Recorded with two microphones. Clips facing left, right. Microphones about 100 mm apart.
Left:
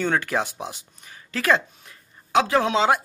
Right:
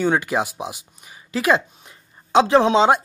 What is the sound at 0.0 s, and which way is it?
Speech, 15° right (ahead or behind).